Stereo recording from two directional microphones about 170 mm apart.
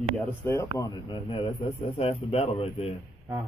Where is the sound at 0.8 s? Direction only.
30° left (ahead or behind).